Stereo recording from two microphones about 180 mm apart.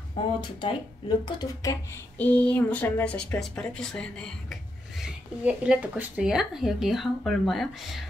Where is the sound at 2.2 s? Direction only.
10° left (ahead or behind).